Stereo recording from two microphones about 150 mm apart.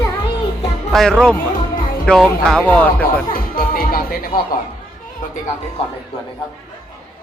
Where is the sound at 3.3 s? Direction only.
70° left (ahead or behind).